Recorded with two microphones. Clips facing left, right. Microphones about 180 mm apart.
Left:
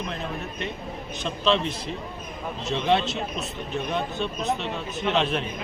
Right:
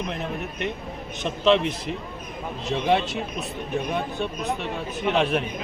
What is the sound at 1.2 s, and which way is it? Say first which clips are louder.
Speech: right 4 dB; 15° right (ahead or behind).